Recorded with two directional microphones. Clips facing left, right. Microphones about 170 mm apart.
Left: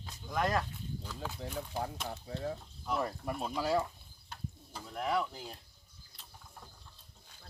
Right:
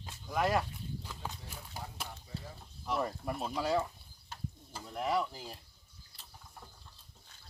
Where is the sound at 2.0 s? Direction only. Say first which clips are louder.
Left 9 dB; 75° left (ahead or behind).